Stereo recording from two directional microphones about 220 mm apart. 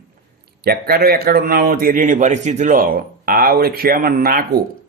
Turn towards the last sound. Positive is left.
turn(degrees=-40)  # may be behind; listen again after turning